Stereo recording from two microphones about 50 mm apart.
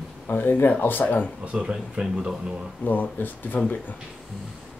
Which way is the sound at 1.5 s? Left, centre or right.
Centre.